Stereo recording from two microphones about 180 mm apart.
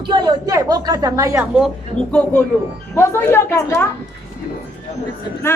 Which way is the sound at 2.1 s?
10° left (ahead or behind).